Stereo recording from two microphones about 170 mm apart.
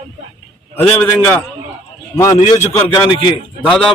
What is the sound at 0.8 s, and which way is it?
A man's voice, 10° left (ahead or behind).